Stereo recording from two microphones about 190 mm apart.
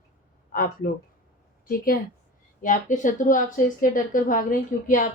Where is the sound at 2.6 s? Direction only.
45° left (ahead or behind).